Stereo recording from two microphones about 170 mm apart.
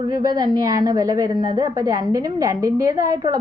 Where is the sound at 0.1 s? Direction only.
25° right (ahead or behind).